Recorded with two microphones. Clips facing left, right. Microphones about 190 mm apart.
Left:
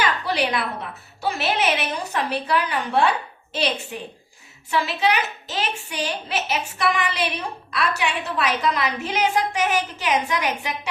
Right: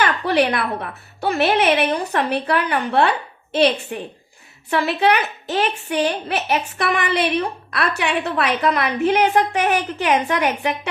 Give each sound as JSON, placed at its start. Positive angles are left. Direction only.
{"t": 0.0, "sound": "a woman's voice", "side_deg": -60}